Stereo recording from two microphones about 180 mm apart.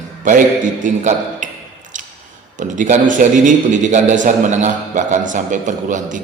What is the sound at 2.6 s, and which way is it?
A man's voice, 45° right (ahead or behind).